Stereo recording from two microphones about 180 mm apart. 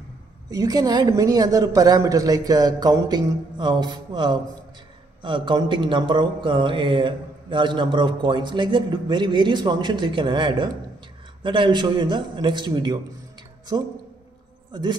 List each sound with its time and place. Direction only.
0.5 s speech: 20° right (ahead or behind)
14.7 s speech: 25° right (ahead or behind)